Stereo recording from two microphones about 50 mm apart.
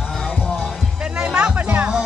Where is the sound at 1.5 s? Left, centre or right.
Right.